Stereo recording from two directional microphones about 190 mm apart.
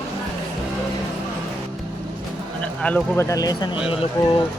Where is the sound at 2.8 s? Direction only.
5° left (ahead or behind).